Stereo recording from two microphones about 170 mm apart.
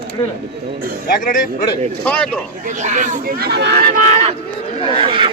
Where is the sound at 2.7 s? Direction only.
45° right (ahead or behind).